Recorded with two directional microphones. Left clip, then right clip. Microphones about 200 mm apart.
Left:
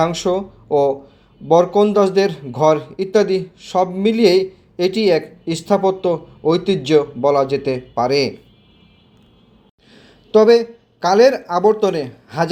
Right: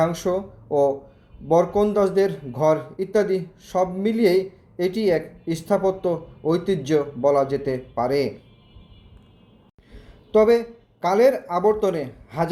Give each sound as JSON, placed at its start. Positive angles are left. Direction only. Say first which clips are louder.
{"t": 0.0, "sound": "a woman's voice", "louder": "left 4 dB", "side_deg": 15}
{"t": 9.9, "sound": "speech", "louder": "left 5 dB", "side_deg": 15}